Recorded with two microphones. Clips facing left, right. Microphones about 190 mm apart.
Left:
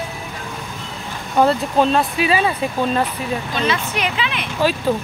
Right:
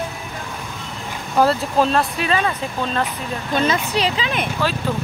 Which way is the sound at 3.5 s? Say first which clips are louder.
Right 5 dB; 40° right (ahead or behind).